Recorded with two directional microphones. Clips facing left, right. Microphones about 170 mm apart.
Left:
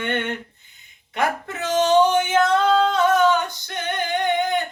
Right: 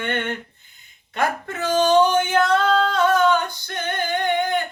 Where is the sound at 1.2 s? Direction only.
20° left (ahead or behind).